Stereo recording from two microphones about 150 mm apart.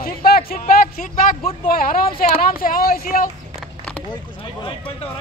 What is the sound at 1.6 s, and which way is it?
A woman's voice, 75° left (ahead or behind).